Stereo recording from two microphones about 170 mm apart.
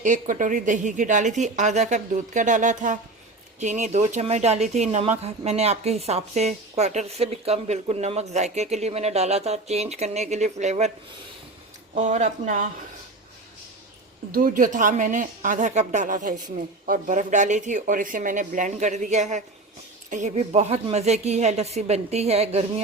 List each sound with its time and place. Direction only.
0.0 s a woman's voice: 50° right (ahead or behind)
11.9 s speech: 45° right (ahead or behind)
14.3 s a woman's voice: 50° right (ahead or behind)